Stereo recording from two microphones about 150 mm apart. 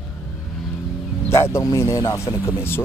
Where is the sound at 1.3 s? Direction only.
20° left (ahead or behind).